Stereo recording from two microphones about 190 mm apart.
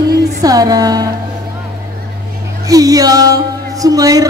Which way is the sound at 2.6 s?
20° right (ahead or behind).